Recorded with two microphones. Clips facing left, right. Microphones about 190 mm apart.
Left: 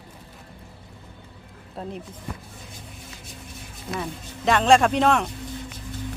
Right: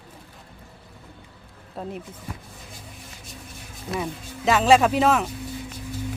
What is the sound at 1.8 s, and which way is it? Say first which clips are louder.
Speech: right 1 dB; centre (ahead or behind).